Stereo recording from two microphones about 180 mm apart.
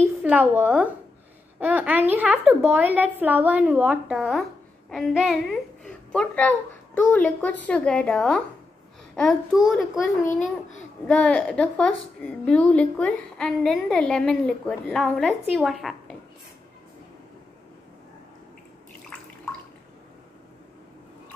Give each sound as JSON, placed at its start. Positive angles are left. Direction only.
{"t": 0.2, "sound": "a woman's voice", "side_deg": -10}
{"t": 4.2, "sound": "a woman's voice", "side_deg": 0}